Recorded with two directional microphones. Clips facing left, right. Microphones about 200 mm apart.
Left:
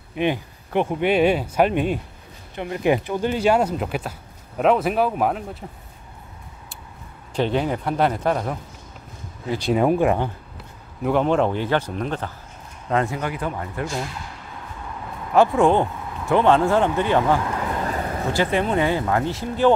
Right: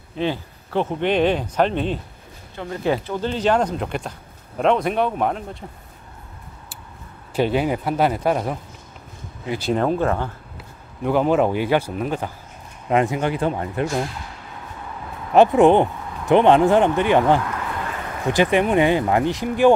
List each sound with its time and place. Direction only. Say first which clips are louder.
0.1 s speech: left 1 dB; 15° left (ahead or behind)
7.3 s a man's voice: right 2 dB; 10° right (ahead or behind)
9.8 s speech: left 3 dB; 15° left (ahead or behind)
11.0 s a man's voice: right 1 dB; centre (ahead or behind); by 14.0 s 25° right (ahead or behind)
15.3 s speech: right 3 dB; 20° right (ahead or behind)
17.5 s a sound: left 3 dB; 35° left (ahead or behind)
18.3 s a man's voice: right 4 dB; 15° right (ahead or behind)